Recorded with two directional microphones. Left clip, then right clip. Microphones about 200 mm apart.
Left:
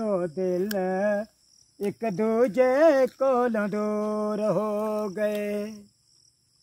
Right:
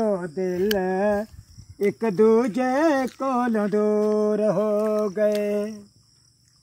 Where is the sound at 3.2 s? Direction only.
40° left (ahead or behind).